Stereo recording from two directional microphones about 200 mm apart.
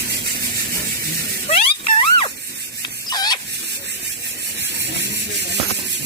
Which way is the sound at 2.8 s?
20° left (ahead or behind).